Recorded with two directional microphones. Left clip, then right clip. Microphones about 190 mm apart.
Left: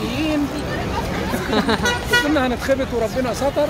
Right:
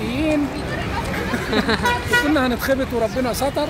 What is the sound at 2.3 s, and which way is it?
Speech, 55° right (ahead or behind).